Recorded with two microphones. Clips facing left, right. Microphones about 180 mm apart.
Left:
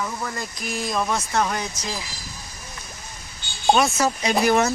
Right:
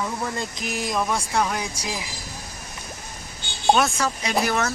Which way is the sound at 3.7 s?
Centre (ahead or behind).